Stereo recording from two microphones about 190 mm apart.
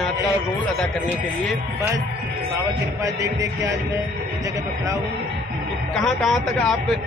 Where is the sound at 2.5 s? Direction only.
15° right (ahead or behind).